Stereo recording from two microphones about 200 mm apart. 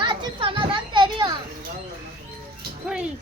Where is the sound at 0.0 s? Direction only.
25° right (ahead or behind).